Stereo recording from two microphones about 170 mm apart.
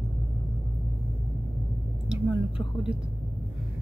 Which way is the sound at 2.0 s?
5° right (ahead or behind).